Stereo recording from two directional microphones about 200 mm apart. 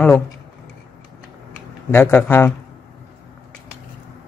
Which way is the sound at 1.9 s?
10° left (ahead or behind).